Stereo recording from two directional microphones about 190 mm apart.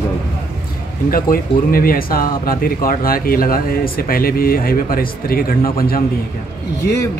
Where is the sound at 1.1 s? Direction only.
50° left (ahead or behind).